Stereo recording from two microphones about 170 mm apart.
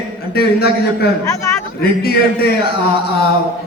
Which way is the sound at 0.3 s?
70° left (ahead or behind).